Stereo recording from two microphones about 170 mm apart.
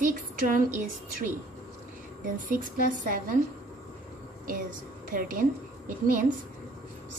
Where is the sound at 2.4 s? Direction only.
55° right (ahead or behind).